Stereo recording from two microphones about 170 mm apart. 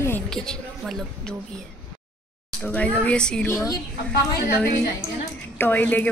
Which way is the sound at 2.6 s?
10° left (ahead or behind).